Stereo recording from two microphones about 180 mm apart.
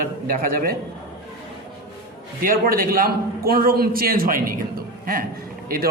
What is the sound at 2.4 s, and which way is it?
A man's voice, 50° right (ahead or behind).